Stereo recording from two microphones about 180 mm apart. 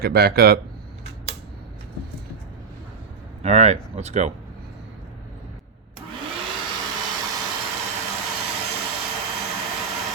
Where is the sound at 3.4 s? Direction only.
35° right (ahead or behind).